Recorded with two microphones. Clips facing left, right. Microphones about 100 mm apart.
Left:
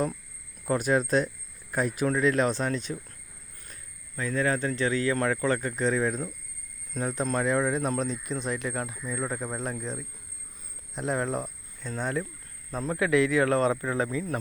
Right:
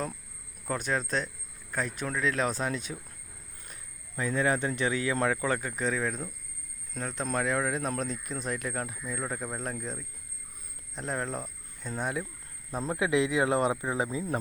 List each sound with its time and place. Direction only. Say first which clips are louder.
0.6 s speech: left 6 dB; 5° left (ahead or behind)
3.7 s speech: left 1 dB; 20° right (ahead or behind); by 11.5 s 5° left (ahead or behind)
11.8 s speech: left 2 dB; 15° right (ahead or behind)